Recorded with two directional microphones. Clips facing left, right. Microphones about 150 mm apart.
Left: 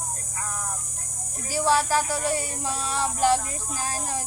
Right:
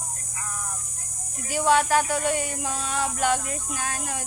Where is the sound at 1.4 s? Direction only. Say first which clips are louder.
Right 2 dB; 35° left (ahead or behind).